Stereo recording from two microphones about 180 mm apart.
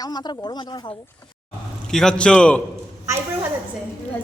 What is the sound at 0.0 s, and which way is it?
Speech, 20° left (ahead or behind).